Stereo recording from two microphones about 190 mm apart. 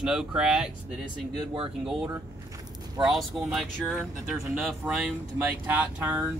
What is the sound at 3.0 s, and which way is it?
Speech, centre (ahead or behind).